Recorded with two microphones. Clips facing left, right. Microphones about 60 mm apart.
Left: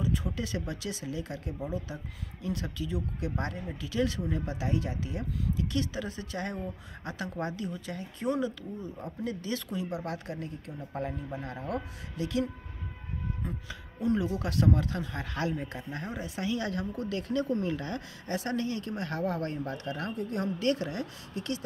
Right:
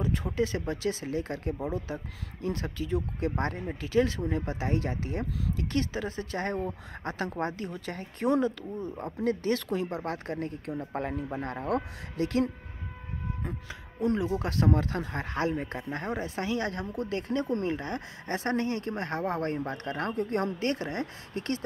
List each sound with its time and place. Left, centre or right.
0.0 s speech: right
0.3 s speech: right
2.4 s speech: right
13.4 s speech: right
20.5 s speech: right